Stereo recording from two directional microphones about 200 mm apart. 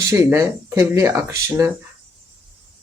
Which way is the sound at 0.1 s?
15° right (ahead or behind).